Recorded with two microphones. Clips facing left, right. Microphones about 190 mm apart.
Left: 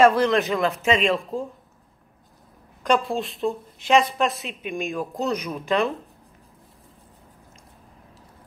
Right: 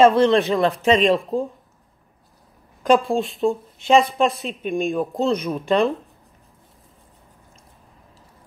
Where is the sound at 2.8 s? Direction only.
Centre (ahead or behind).